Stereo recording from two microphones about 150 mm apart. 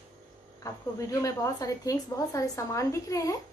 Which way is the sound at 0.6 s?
20° left (ahead or behind).